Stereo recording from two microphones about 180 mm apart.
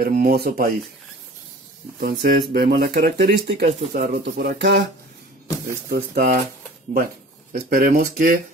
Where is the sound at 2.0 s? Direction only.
65° right (ahead or behind).